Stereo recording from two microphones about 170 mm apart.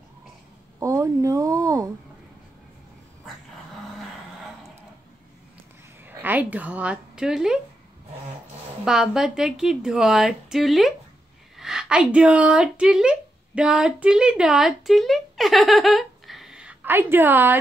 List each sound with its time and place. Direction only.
0.7 s a sound: 20° right (ahead or behind)
6.0 s speech: 10° right (ahead or behind)
8.8 s a woman's voice: 5° right (ahead or behind)